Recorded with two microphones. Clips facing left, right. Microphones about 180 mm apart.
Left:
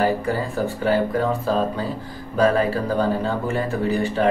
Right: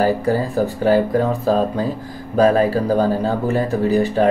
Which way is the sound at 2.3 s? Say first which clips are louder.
Right 4 dB; 40° right (ahead or behind).